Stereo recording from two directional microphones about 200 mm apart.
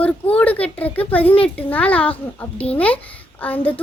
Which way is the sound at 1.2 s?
25° left (ahead or behind).